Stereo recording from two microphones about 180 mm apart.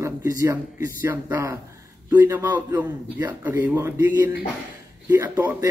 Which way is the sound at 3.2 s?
10° right (ahead or behind).